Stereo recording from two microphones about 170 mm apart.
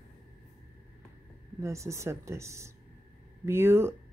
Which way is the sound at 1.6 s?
15° right (ahead or behind).